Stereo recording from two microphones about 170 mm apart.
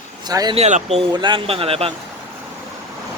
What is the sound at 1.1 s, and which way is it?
Speech, 30° right (ahead or behind).